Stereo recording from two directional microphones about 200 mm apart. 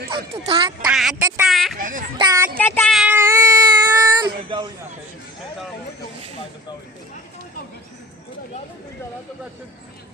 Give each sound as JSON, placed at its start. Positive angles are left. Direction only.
{"t": 0.1, "sound": "speech", "side_deg": -25}
{"t": 0.9, "sound": "speech", "side_deg": 0}
{"t": 1.8, "sound": "speech", "side_deg": -40}
{"t": 2.1, "sound": "speech", "side_deg": -15}
{"t": 2.6, "sound": "child singing", "side_deg": 10}
{"t": 2.9, "sound": "cat", "side_deg": -5}
{"t": 4.4, "sound": "speech", "side_deg": -25}